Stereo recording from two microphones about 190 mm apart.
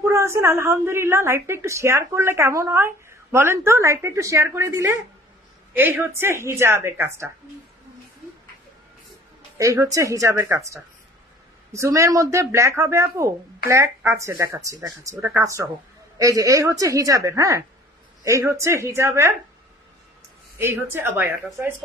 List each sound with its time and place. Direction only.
0.0 s a woman's voice: 15° right (ahead or behind)
9.6 s a woman's voice: 15° right (ahead or behind)
20.9 s a woman's voice: 10° right (ahead or behind)